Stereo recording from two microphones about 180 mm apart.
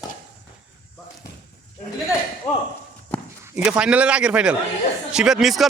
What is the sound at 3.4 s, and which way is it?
A man's voice, 5° right (ahead or behind).